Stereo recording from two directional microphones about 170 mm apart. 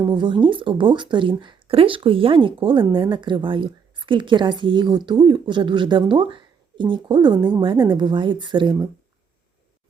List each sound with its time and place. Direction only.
0.0 s speech: 25° right (ahead or behind)